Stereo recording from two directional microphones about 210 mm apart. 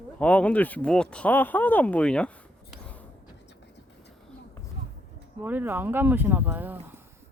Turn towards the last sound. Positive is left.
turn(degrees=-10)  # may be behind; listen again after turning